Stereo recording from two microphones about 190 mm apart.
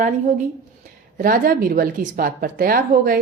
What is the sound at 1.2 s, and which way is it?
A woman's voice, 50° right (ahead or behind).